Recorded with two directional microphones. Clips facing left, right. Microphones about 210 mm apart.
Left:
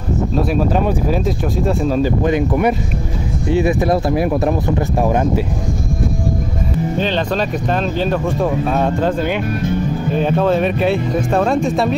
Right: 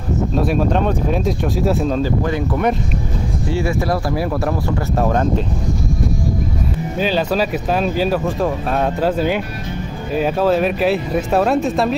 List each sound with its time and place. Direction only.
0.3 s speech: centre (ahead or behind)
2.0 s speech: 20° left (ahead or behind)
7.0 s speech: 5° right (ahead or behind)